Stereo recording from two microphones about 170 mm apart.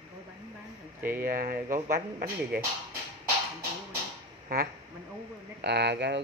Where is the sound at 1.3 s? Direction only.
55° right (ahead or behind).